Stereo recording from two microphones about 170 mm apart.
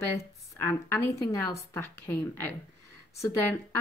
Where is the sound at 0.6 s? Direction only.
15° left (ahead or behind).